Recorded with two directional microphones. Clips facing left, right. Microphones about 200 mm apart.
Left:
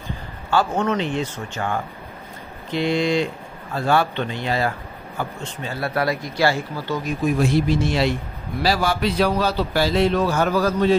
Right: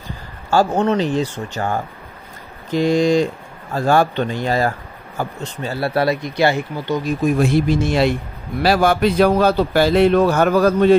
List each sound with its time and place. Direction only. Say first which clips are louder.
0.5 s speech: right 4 dB; 40° right (ahead or behind); by 7.0 s 20° right (ahead or behind)
7.3 s a man's voice: right 1 dB; 55° right (ahead or behind)